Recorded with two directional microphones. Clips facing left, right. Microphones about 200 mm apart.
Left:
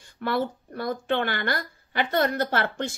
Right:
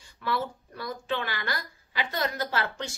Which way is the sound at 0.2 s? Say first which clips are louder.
Left 4 dB; 55° left (ahead or behind).